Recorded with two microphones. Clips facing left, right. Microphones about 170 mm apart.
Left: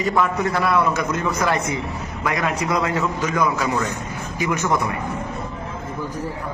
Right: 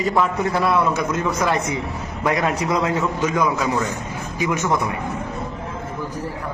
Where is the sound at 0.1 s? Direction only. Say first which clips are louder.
Even; centre (ahead or behind).